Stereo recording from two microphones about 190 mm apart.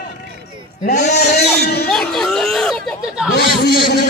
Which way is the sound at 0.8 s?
40° left (ahead or behind).